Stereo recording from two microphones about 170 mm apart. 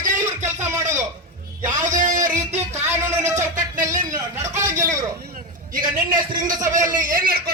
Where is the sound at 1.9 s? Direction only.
50° right (ahead or behind).